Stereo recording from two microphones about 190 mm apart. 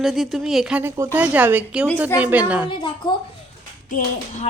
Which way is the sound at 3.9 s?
45° left (ahead or behind).